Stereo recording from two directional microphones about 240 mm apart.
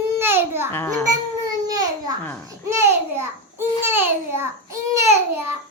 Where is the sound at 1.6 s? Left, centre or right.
Centre.